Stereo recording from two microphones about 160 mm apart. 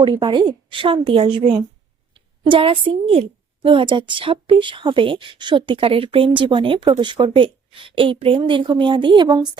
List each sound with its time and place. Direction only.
0.0 s a woman's voice: 30° right (ahead or behind)